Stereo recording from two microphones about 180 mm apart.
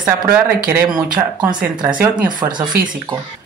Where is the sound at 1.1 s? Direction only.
25° right (ahead or behind).